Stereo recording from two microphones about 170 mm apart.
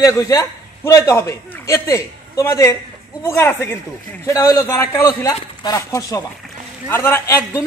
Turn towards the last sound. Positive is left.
turn(degrees=15)  # may be behind; listen again after turning